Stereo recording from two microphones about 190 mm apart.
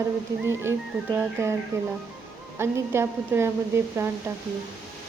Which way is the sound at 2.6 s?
15° right (ahead or behind).